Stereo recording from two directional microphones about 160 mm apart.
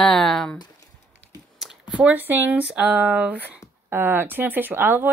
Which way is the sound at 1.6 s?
5° right (ahead or behind).